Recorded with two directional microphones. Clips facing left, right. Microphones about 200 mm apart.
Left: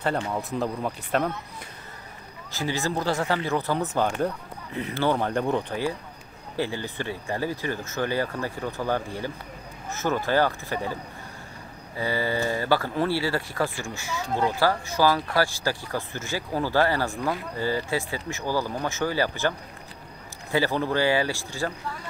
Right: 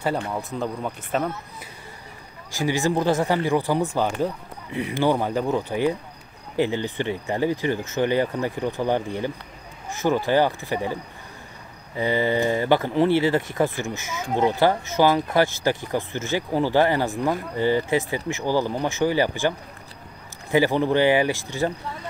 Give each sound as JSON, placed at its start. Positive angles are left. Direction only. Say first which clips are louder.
{"t": 0.3, "sound": "speech", "louder": "even", "side_deg": 0}
{"t": 2.5, "sound": "speech", "louder": "right 5 dB", "side_deg": -15}
{"t": 6.5, "sound": "speech", "louder": "right 6 dB", "side_deg": -20}
{"t": 12.0, "sound": "speech", "louder": "right 5 dB", "side_deg": -20}
{"t": 20.5, "sound": "speech", "louder": "right 5 dB", "side_deg": -15}